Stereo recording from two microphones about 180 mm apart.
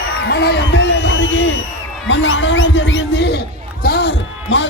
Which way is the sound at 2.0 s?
90° left.